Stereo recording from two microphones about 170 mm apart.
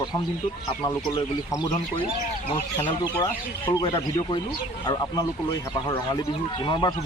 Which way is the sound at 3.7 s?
20° left (ahead or behind).